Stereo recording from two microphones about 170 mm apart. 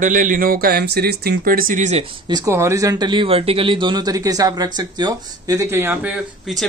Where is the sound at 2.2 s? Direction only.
20° right (ahead or behind).